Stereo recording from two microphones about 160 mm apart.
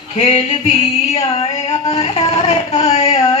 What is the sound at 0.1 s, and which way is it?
Female singing, 40° left (ahead or behind).